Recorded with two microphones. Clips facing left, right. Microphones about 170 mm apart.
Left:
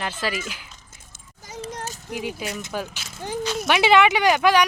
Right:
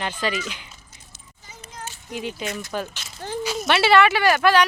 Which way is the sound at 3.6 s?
15° left (ahead or behind).